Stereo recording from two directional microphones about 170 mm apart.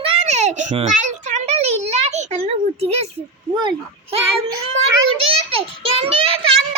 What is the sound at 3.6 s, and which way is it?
Speech, 25° right (ahead or behind).